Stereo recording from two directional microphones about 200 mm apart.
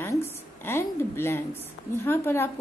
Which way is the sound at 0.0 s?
10° left (ahead or behind).